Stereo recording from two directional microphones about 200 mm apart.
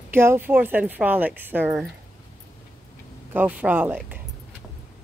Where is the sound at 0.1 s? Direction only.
10° right (ahead or behind).